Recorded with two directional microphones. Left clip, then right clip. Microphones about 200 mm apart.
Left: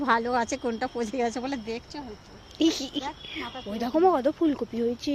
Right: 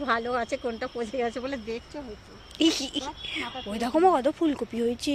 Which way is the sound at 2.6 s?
5° left (ahead or behind).